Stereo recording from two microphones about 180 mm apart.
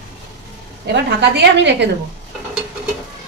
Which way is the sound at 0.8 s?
75° right (ahead or behind).